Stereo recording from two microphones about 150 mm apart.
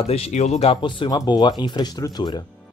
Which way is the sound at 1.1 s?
30° left (ahead or behind).